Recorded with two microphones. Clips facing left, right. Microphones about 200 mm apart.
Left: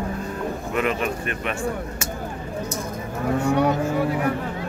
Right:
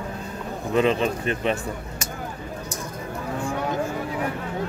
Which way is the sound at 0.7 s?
30° right (ahead or behind).